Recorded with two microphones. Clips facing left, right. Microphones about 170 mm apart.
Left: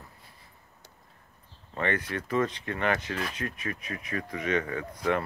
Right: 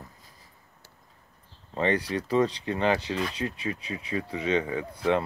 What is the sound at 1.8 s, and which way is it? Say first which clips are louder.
Speech: right 4 dB; 35° right (ahead or behind).